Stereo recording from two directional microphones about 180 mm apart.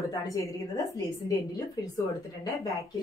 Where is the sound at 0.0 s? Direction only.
20° left (ahead or behind).